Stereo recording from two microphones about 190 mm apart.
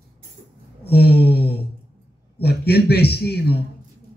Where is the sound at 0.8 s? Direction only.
55° left (ahead or behind).